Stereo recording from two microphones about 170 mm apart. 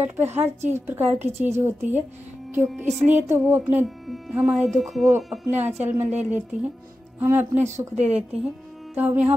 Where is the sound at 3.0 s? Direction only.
45° right (ahead or behind).